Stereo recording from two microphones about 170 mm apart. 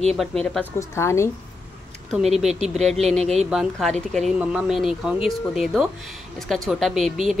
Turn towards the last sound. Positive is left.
turn(degrees=0)  # may be behind; listen again after turning